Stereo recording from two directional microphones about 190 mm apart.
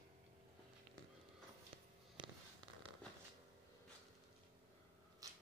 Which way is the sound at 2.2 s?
25° right (ahead or behind).